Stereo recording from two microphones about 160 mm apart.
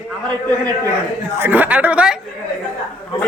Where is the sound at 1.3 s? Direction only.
10° right (ahead or behind).